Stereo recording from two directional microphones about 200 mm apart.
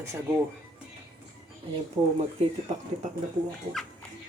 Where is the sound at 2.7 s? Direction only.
30° right (ahead or behind).